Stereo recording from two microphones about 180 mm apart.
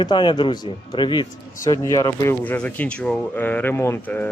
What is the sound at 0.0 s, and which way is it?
A man's voice, 25° left (ahead or behind).